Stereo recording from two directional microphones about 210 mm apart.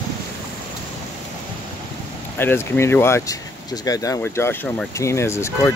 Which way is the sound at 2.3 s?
10° left (ahead or behind).